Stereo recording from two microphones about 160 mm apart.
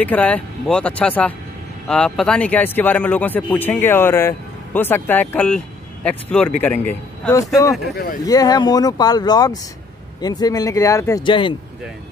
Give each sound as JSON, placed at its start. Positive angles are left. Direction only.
{"t": 0.0, "sound": "speech", "side_deg": 10}
{"t": 8.3, "sound": "speech", "side_deg": 25}
{"t": 11.2, "sound": "speech", "side_deg": 30}